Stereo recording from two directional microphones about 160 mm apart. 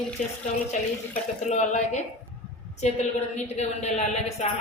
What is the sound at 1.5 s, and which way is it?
A woman's voice, 45° left (ahead or behind).